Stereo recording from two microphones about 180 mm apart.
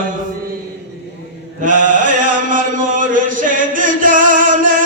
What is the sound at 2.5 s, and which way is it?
Chant, 45° right (ahead or behind).